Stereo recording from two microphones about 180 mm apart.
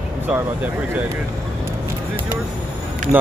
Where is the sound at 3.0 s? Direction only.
45° right (ahead or behind).